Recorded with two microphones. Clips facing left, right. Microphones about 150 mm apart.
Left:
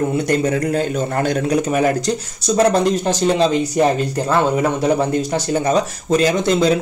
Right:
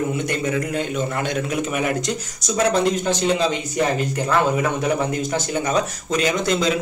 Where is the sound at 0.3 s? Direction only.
40° left (ahead or behind).